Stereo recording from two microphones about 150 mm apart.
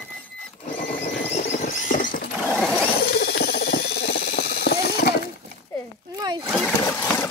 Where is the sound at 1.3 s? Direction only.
55° left (ahead or behind).